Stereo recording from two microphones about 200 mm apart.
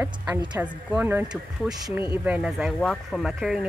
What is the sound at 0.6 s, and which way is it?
A woman's voice, 10° right (ahead or behind).